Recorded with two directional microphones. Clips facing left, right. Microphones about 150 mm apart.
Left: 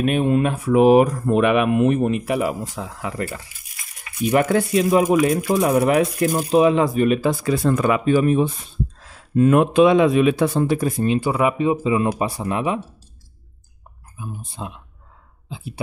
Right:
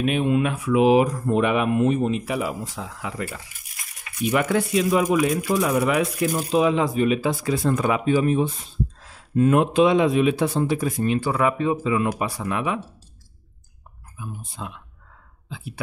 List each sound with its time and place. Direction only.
0.0 s speech: 45° left (ahead or behind)
11.1 s speech: 15° left (ahead or behind)
14.1 s speech: 25° left (ahead or behind)